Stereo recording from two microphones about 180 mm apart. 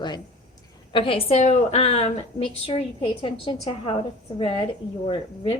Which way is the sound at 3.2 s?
30° left (ahead or behind).